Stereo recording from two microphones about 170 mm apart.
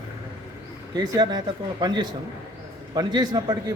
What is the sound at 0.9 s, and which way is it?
A man's voice, 25° right (ahead or behind).